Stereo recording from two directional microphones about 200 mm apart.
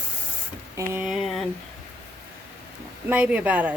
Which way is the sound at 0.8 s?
10° right (ahead or behind).